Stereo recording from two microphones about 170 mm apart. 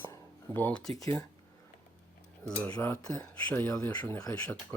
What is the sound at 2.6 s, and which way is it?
Speech, 10° left (ahead or behind).